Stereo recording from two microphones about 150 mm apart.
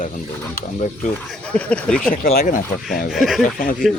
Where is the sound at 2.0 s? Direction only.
65° left (ahead or behind).